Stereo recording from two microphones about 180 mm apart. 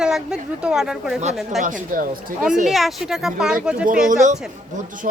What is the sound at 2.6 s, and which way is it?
Speech, centre (ahead or behind).